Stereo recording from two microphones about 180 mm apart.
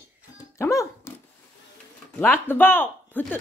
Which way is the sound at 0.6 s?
15° left (ahead or behind).